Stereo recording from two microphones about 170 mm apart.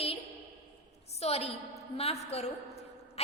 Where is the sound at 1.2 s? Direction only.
35° left (ahead or behind).